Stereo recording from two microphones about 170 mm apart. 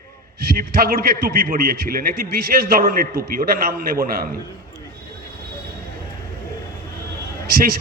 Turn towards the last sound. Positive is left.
turn(degrees=-60)  # may be behind; listen again after turning